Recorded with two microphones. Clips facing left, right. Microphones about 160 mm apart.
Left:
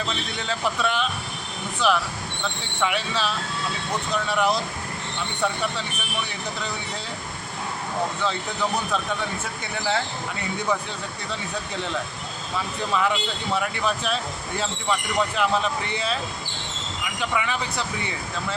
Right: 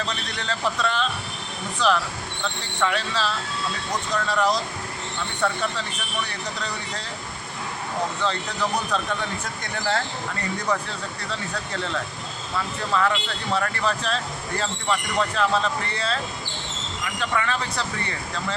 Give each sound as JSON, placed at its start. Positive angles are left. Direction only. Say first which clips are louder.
{"t": 0.0, "sound": "speech", "louder": "left 1 dB", "side_deg": 5}
{"t": 8.2, "sound": "speech", "louder": "even", "side_deg": 5}
{"t": 11.3, "sound": "speech", "louder": "even", "side_deg": 10}
{"t": 12.9, "sound": "speech", "louder": "right 1 dB", "side_deg": 10}